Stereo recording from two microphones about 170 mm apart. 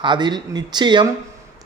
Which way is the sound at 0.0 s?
25° right (ahead or behind).